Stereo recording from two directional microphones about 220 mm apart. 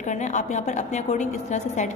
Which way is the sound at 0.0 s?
35° left (ahead or behind).